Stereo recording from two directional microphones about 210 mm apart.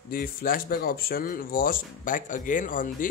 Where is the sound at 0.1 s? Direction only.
45° left (ahead or behind).